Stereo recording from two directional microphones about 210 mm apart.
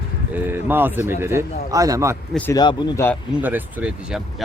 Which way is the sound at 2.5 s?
15° left (ahead or behind).